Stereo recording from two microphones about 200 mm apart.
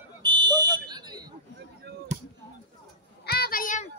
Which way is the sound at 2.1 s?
35° right (ahead or behind).